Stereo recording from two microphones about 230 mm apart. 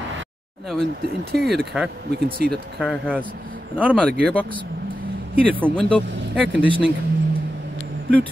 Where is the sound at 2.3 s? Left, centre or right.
Right.